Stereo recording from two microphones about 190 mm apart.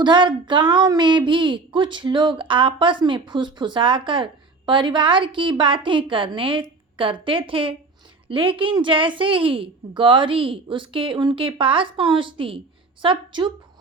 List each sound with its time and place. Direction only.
0.0 s a woman's voice: 25° right (ahead or behind)